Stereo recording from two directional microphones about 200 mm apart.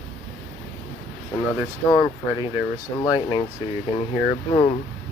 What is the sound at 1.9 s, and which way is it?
Speech, 20° left (ahead or behind).